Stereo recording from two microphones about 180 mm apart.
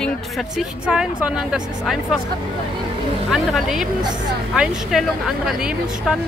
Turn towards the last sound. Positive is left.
turn(degrees=-5)  # may be behind; listen again after turning